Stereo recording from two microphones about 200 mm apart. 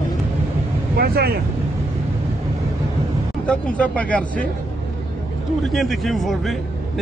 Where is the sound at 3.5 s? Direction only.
5° left (ahead or behind).